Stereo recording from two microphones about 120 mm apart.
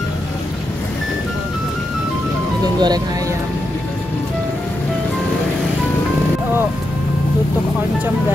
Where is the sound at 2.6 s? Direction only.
35° right (ahead or behind).